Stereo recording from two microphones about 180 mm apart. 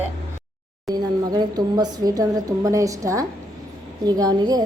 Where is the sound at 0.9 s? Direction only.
20° right (ahead or behind).